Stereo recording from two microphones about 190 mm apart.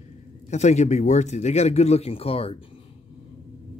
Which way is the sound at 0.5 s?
35° left (ahead or behind).